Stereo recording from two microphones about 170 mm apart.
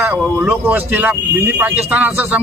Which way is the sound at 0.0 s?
15° right (ahead or behind).